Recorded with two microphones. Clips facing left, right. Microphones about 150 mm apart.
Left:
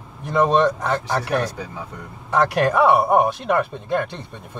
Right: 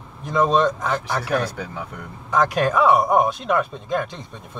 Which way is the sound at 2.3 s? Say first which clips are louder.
Left 1 dB; 65° left (ahead or behind).